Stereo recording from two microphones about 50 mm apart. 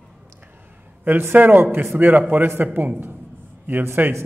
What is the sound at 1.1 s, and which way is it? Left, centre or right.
A man's voice, right.